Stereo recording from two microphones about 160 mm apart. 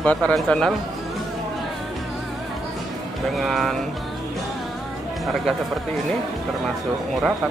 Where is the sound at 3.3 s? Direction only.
Centre (ahead or behind).